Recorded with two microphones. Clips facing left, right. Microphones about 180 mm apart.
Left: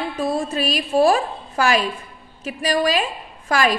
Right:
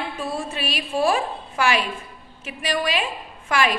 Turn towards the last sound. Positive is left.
turn(degrees=40)  # may be behind; listen again after turning